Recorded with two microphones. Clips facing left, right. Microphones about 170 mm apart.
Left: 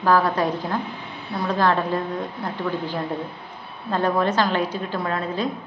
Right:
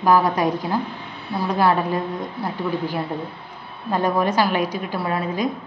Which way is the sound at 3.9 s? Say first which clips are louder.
Right 1 dB; 10° right (ahead or behind).